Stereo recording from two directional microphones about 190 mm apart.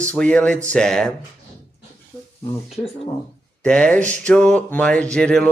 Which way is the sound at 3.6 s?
5° left (ahead or behind).